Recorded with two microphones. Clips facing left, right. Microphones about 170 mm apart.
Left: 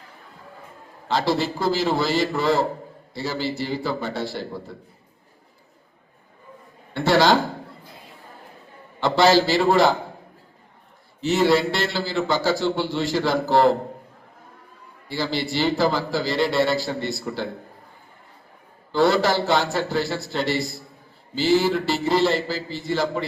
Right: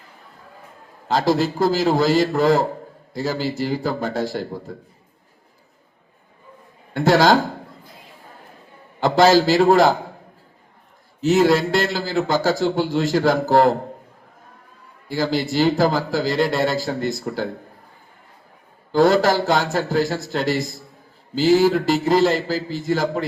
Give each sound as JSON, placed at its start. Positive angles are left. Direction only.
{"t": 1.0, "sound": "a man's voice", "side_deg": -45}
{"t": 6.9, "sound": "a man's voice", "side_deg": -45}
{"t": 9.0, "sound": "a man's voice", "side_deg": -45}
{"t": 11.2, "sound": "a man's voice", "side_deg": -45}
{"t": 15.1, "sound": "a man's voice", "side_deg": -45}
{"t": 18.9, "sound": "a man's voice", "side_deg": -40}